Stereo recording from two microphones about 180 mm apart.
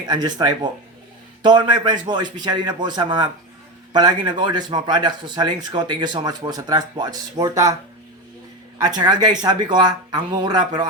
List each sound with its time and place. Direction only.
0.0 s speech: 20° right (ahead or behind)
8.8 s speech: 20° right (ahead or behind)